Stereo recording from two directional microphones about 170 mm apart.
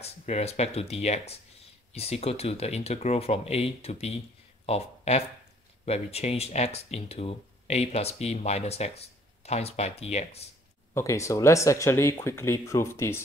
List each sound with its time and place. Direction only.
0.0 s speech: 40° left (ahead or behind)
11.0 s speech: 15° left (ahead or behind)